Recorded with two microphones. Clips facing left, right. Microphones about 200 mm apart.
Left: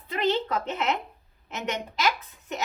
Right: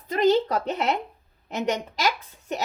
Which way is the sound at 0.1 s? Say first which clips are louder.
Right 6 dB; 40° right (ahead or behind).